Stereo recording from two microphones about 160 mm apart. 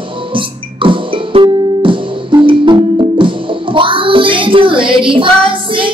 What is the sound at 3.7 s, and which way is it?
Child singing, 30° right (ahead or behind).